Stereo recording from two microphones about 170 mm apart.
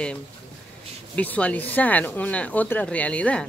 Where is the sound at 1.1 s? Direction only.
10° left (ahead or behind).